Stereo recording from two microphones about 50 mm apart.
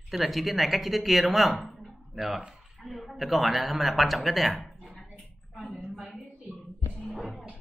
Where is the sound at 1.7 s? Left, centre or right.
Centre.